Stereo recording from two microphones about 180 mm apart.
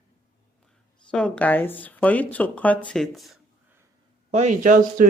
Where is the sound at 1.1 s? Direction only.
5° left (ahead or behind).